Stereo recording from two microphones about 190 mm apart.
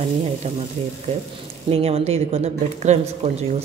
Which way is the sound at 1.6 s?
30° right (ahead or behind).